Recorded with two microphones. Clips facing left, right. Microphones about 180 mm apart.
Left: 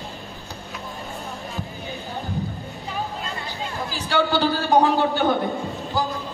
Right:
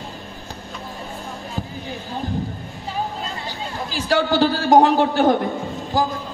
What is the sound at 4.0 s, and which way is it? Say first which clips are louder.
A man's voice: right 3 dB; 90° right.